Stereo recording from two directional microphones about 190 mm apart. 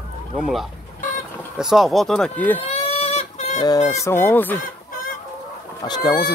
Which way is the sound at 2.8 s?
35° left (ahead or behind).